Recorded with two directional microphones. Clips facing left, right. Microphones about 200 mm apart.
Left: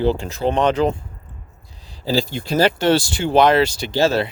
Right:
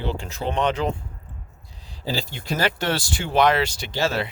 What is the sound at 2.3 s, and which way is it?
Speech, 35° left (ahead or behind).